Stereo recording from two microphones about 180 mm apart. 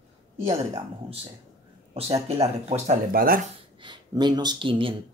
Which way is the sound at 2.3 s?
35° right (ahead or behind).